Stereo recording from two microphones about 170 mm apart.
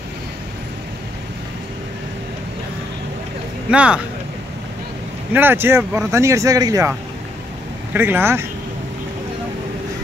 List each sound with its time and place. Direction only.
3.7 s speech: 5° right (ahead or behind)
5.3 s speech: 10° right (ahead or behind)
7.9 s speech: 10° right (ahead or behind)